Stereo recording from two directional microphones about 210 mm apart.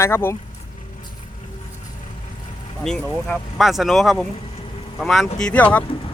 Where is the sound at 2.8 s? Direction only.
5° left (ahead or behind).